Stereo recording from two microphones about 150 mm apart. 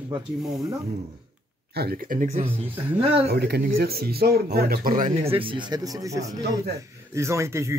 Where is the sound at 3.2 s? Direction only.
90° right.